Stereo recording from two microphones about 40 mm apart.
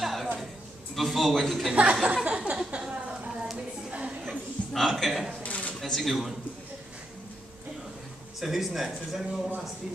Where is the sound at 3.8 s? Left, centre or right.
Right.